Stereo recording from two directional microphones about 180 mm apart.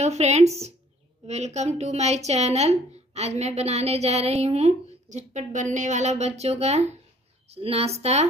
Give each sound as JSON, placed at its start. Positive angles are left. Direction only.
{"t": 0.0, "sound": "a woman's voice", "side_deg": -40}